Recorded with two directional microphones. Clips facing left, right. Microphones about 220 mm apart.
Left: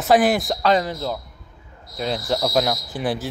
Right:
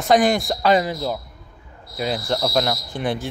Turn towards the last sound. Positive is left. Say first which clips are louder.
# even
turn(degrees=5)  # may be behind; listen again after turning